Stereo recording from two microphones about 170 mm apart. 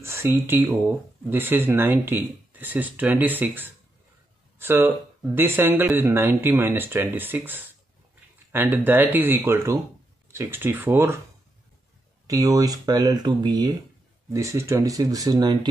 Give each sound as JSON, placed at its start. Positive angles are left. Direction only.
{"t": 0.0, "sound": "speech", "side_deg": -15}
{"t": 12.3, "sound": "speech", "side_deg": -20}